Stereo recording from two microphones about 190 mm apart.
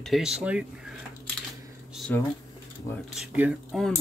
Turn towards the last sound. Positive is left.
turn(degrees=-5)  # may be behind; listen again after turning